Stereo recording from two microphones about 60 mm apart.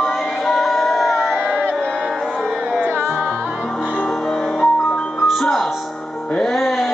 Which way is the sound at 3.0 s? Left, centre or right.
Centre.